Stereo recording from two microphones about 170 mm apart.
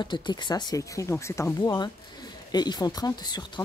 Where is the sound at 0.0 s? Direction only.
25° left (ahead or behind).